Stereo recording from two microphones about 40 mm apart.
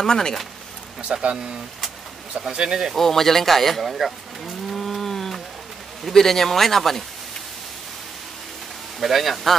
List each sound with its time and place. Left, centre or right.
0.0 s speech: centre
1.0 s speech: right
2.9 s speech: centre
9.0 s speech: centre